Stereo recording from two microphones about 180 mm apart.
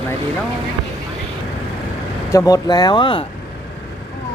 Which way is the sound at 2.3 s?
20° left (ahead or behind).